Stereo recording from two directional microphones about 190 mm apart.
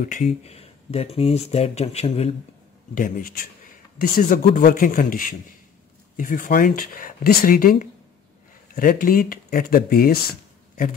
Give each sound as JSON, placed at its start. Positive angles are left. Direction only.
{"t": 0.0, "sound": "speech", "side_deg": 40}
{"t": 2.9, "sound": "speech", "side_deg": 45}